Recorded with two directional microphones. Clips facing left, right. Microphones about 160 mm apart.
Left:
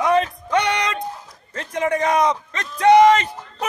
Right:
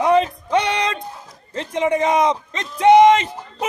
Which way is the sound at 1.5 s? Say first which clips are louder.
Right 2 dB; 25° right (ahead or behind).